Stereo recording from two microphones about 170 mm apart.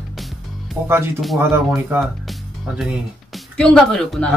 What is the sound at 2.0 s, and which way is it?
Speech, centre (ahead or behind).